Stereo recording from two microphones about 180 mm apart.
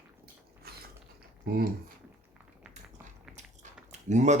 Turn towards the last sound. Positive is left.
turn(degrees=-40)  # may be behind; listen again after turning